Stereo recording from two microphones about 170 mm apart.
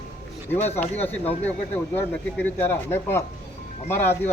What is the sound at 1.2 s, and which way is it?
Speech, 35° left (ahead or behind).